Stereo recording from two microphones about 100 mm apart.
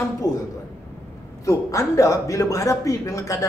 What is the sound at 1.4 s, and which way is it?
A man's voice, 30° left (ahead or behind).